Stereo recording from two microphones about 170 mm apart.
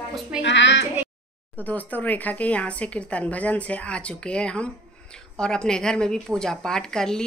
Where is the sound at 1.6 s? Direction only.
10° left (ahead or behind).